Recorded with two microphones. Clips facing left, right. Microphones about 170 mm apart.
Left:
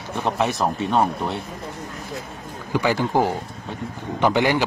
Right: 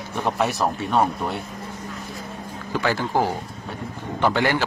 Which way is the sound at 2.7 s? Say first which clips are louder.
Left 3 dB; 15° left (ahead or behind).